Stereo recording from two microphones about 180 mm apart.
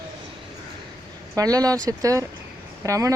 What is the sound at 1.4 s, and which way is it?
Speech, 20° right (ahead or behind).